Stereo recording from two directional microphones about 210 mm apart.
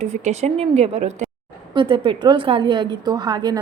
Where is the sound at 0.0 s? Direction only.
30° right (ahead or behind).